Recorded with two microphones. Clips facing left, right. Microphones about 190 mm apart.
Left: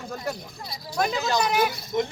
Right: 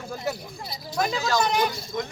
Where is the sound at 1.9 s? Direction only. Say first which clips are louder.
Left 8 dB; 20° left (ahead or behind).